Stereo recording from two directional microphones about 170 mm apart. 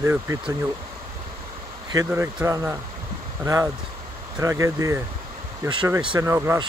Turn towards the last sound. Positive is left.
turn(degrees=-15)  # may be behind; listen again after turning